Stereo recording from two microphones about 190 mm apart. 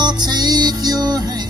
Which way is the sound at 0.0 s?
20° right (ahead or behind).